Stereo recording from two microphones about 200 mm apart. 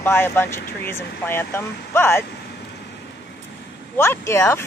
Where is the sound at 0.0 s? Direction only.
10° left (ahead or behind).